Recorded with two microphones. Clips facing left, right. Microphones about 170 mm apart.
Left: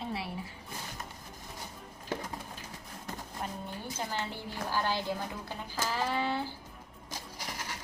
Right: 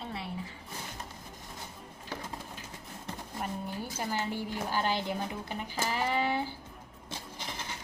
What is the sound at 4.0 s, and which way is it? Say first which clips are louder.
A woman's voice: right 4 dB; 15° right (ahead or behind).